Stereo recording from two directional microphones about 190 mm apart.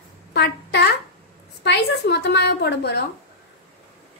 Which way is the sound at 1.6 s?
65° left (ahead or behind).